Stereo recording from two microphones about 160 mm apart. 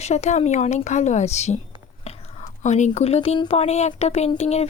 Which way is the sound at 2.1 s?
40° left (ahead or behind).